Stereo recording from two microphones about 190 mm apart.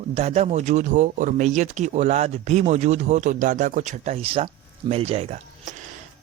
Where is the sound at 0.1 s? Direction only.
35° right (ahead or behind).